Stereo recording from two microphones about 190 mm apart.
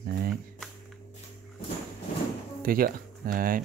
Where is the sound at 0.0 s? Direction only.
50° right (ahead or behind).